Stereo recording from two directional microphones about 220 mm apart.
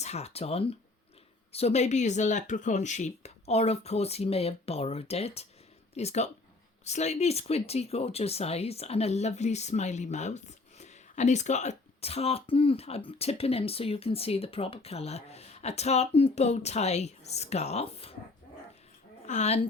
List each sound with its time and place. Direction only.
0.0 s speech: 30° left (ahead or behind)
19.2 s speech: 30° left (ahead or behind)